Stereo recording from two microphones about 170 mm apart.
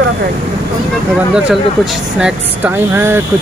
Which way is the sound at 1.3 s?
5° right (ahead or behind).